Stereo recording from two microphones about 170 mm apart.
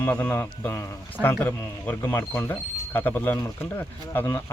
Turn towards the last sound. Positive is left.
turn(degrees=15)  # may be behind; listen again after turning